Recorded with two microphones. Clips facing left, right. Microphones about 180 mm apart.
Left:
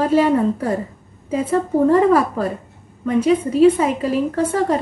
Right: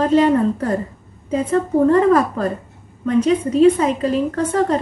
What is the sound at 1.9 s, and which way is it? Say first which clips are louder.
A woman's voice: even; 10° left (ahead or behind).